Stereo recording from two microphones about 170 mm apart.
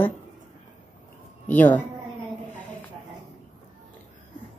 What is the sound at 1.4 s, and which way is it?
Speech, 10° left (ahead or behind).